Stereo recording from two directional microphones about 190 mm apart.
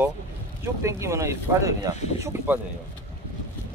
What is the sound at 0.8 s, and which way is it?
Speech, 15° right (ahead or behind).